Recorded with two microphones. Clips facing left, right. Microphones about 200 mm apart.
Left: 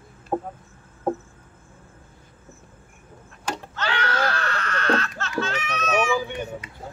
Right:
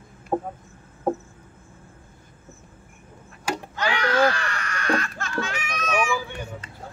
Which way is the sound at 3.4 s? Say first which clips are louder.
Right 2 dB; 10° right (ahead or behind).